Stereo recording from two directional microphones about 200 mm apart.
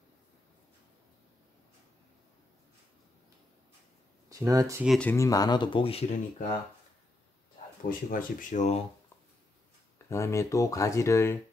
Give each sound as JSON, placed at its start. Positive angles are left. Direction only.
{"t": 4.3, "sound": "speech", "side_deg": -15}
{"t": 4.8, "sound": "speech", "side_deg": 5}
{"t": 5.1, "sound": "speech", "side_deg": 15}
{"t": 8.1, "sound": "speech", "side_deg": 40}
{"t": 10.0, "sound": "speech", "side_deg": 15}